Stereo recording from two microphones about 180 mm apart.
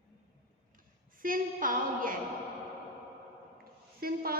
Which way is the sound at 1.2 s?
50° right (ahead or behind).